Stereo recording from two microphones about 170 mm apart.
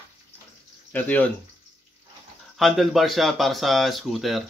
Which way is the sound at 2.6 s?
Centre (ahead or behind).